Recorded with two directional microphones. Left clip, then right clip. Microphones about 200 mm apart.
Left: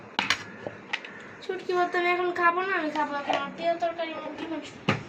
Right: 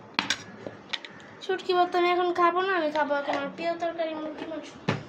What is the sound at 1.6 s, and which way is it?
Speech, 55° right (ahead or behind).